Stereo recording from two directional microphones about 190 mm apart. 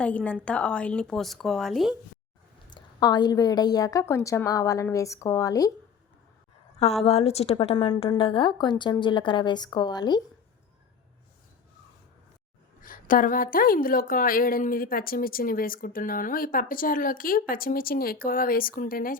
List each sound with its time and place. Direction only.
0.0 s a woman's voice: 5° left (ahead or behind)
2.6 s a woman's voice: 20° left (ahead or behind)
7.0 s a woman's voice: 30° left (ahead or behind)
12.8 s a woman's voice: 45° left (ahead or behind)